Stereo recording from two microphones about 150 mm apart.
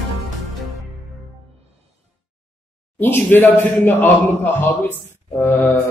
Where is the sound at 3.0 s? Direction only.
15° left (ahead or behind).